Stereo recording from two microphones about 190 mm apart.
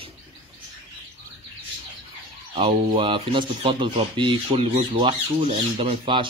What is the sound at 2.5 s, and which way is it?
Speech, 30° right (ahead or behind).